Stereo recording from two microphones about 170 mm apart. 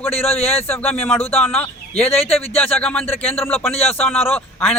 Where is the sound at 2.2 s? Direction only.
35° left (ahead or behind).